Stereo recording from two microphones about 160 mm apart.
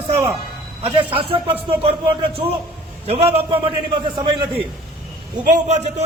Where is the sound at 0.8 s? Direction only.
35° right (ahead or behind).